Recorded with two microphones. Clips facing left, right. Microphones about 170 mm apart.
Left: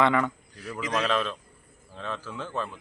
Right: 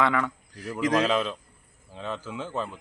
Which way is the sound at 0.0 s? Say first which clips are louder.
Left 2 dB; centre (ahead or behind).